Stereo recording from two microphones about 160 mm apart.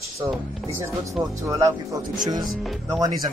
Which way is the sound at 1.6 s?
20° right (ahead or behind).